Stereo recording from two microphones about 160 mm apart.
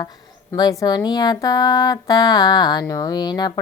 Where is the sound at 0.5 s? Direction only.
25° left (ahead or behind).